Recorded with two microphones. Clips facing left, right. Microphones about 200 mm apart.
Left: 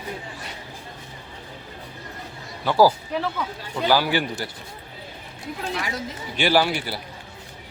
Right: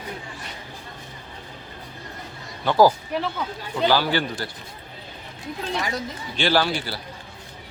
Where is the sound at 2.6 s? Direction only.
10° left (ahead or behind).